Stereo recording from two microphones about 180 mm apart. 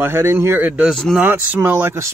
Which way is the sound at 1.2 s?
10° right (ahead or behind).